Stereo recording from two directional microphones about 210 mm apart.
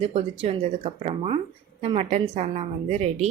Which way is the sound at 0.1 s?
30° right (ahead or behind).